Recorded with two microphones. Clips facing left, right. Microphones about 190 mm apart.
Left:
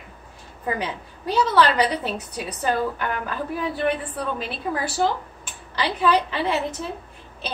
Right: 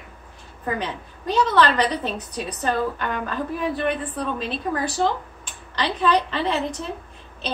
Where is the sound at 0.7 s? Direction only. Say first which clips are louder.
Even; 10° left (ahead or behind).